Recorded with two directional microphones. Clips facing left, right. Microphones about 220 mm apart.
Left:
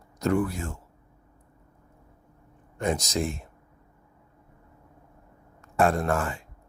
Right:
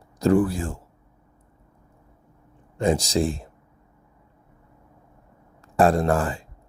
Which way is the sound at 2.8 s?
30° right (ahead or behind).